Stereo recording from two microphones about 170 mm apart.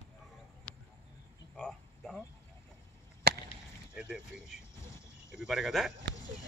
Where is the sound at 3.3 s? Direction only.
70° right (ahead or behind).